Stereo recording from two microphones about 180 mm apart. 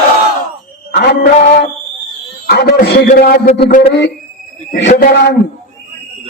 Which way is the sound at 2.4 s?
60° left (ahead or behind).